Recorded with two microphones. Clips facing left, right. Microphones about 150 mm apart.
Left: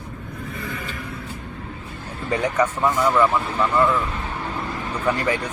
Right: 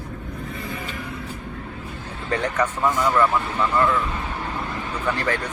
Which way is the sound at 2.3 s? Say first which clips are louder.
Left 2 dB; 5° left (ahead or behind).